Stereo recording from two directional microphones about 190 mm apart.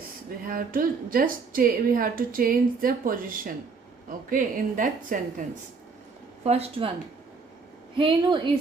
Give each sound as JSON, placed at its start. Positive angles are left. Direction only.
{"t": 0.4, "sound": "a woman's voice", "side_deg": -45}
{"t": 6.4, "sound": "speech", "side_deg": -35}
{"t": 7.9, "sound": "a woman's voice", "side_deg": -25}